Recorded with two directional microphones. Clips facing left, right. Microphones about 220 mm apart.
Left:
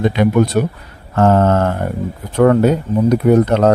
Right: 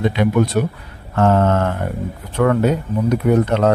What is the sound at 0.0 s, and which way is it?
Speech, 40° left (ahead or behind).